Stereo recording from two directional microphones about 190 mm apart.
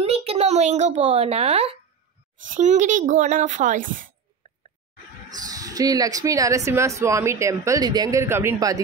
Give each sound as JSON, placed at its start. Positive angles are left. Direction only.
{"t": 0.0, "sound": "a child's voice", "side_deg": -30}
{"t": 5.4, "sound": "speech", "side_deg": -20}